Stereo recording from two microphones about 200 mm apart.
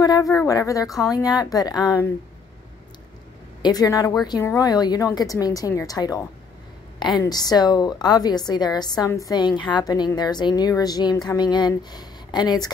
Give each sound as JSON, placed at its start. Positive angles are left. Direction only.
{"t": 0.0, "sound": "speech", "side_deg": 20}
{"t": 0.8, "sound": "speech", "side_deg": 0}
{"t": 1.1, "sound": "a woman's voice", "side_deg": 20}
{"t": 3.6, "sound": "a woman's voice", "side_deg": 20}